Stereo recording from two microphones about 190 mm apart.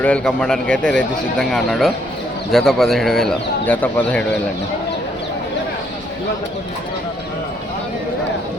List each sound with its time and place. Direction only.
0.0 s speech: 5° left (ahead or behind)